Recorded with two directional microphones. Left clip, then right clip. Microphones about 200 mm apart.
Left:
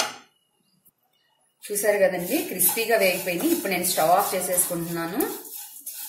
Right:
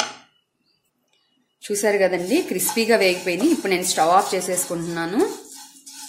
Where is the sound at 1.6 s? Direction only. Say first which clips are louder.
Right 2 dB; 45° right (ahead or behind).